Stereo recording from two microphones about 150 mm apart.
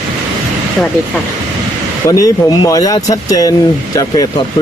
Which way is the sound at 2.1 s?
20° left (ahead or behind).